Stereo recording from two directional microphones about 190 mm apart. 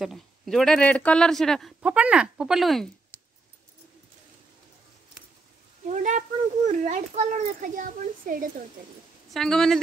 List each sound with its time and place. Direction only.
0.0 s speech: centre (ahead or behind)
5.9 s a child's voice: 40° right (ahead or behind)
9.3 s speech: 5° left (ahead or behind)